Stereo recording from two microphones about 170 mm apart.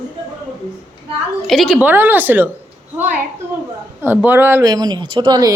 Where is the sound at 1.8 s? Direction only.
10° right (ahead or behind).